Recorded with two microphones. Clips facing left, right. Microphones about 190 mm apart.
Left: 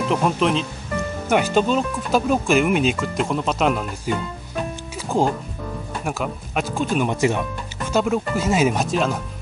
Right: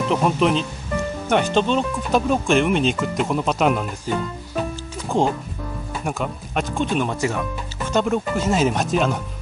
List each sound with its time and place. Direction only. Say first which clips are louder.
0.0 s speech: right 1 dB; centre (ahead or behind)
4.6 s music: right 1 dB; centre (ahead or behind)
6.0 s speech: even; 5° left (ahead or behind)
7.1 s speech: left 3 dB; 20° left (ahead or behind)
7.8 s speech: even; centre (ahead or behind)